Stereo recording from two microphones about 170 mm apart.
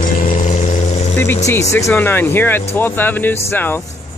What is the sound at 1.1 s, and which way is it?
Speech, 15° left (ahead or behind).